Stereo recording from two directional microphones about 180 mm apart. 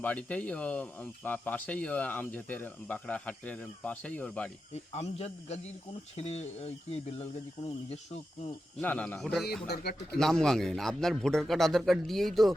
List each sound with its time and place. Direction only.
0.0 s speech: 10° left (ahead or behind)
4.7 s speech: 35° left (ahead or behind)
8.8 s a man's voice: 10° left (ahead or behind)